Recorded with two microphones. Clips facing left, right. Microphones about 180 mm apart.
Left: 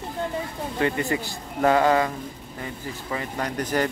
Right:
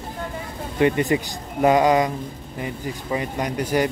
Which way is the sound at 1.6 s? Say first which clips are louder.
Right 3 dB; 15° right (ahead or behind).